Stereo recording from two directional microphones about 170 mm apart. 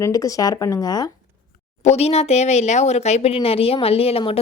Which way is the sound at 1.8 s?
40° left (ahead or behind).